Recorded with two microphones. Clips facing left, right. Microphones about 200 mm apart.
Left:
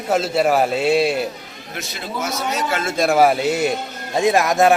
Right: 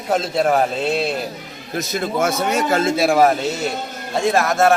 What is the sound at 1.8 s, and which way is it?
A man's voice, 50° right (ahead or behind).